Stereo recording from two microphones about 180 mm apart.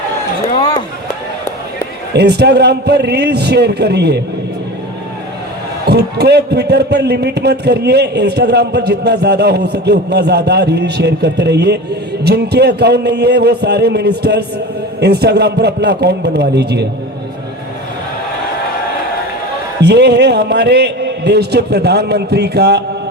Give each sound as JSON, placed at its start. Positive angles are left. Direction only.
{"t": 2.1, "sound": "a man's voice", "side_deg": -65}
{"t": 5.8, "sound": "a man's voice", "side_deg": -65}
{"t": 19.8, "sound": "a man's voice", "side_deg": -65}